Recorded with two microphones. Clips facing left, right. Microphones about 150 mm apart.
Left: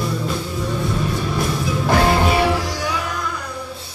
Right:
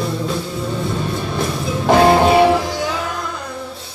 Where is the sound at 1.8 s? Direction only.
25° right (ahead or behind).